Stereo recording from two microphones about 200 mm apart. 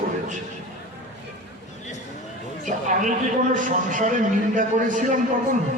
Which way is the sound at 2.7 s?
40° right (ahead or behind).